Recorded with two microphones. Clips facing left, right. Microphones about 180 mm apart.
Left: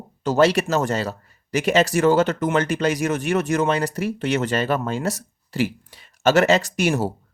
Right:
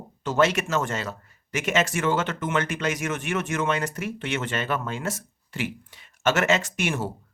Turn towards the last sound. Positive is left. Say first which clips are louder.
# left 6 dB
turn(degrees=40)  # may be behind; listen again after turning